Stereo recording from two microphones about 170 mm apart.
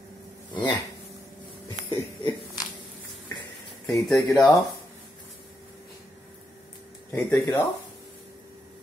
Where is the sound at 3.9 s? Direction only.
Centre (ahead or behind).